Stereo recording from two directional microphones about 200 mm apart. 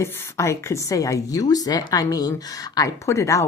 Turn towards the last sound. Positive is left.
turn(degrees=15)  # may be behind; listen again after turning